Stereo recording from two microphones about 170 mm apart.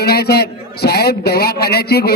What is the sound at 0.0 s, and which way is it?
A man's voice, 65° left (ahead or behind).